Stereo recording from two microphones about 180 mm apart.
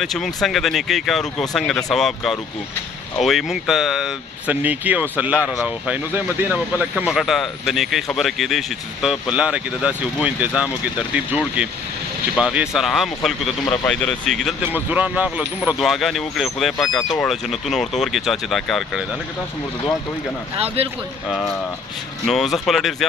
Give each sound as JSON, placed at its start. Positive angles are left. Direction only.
{"t": 0.0, "sound": "speech", "side_deg": 0}
{"t": 14.7, "sound": "speech", "side_deg": -10}
{"t": 20.5, "sound": "speech", "side_deg": -35}
{"t": 21.3, "sound": "speech", "side_deg": 5}